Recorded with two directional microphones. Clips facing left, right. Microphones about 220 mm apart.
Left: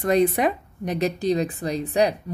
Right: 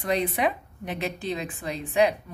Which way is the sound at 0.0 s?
45° left (ahead or behind).